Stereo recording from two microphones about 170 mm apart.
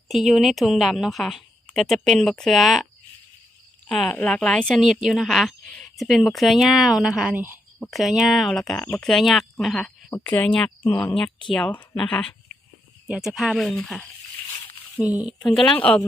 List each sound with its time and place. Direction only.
0.1 s a woman's voice: centre (ahead or behind)
3.8 s a woman's voice: 5° left (ahead or behind)